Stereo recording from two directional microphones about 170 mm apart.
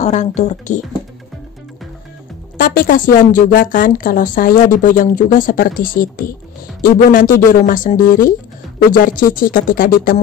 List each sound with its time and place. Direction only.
0.0 s speech: 45° left (ahead or behind)
2.5 s a woman's voice: 55° left (ahead or behind)